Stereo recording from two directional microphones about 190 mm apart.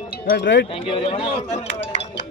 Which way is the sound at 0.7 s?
30° left (ahead or behind).